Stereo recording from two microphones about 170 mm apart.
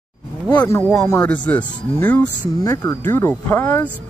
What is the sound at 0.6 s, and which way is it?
Speech, 20° left (ahead or behind).